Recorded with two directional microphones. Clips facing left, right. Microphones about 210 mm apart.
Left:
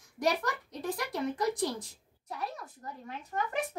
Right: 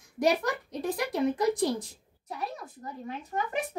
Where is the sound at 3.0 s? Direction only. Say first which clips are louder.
Right 2 dB; 20° right (ahead or behind).